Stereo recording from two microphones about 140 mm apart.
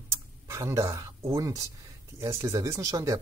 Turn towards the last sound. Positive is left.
turn(degrees=-25)  # may be behind; listen again after turning